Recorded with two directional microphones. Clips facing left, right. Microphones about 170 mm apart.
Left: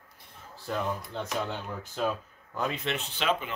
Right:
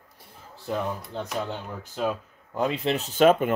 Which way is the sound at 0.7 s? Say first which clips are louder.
Right 2 dB; 10° right (ahead or behind).